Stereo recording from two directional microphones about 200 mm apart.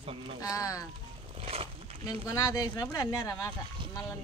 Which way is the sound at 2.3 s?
20° left (ahead or behind).